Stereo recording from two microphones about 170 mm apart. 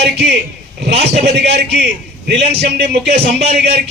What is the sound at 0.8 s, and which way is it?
A man's voice, 80° right.